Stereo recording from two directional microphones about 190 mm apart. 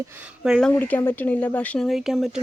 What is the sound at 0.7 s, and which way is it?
Speech, 10° left (ahead or behind).